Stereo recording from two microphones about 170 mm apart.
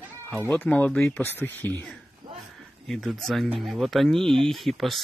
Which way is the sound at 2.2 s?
30° right (ahead or behind).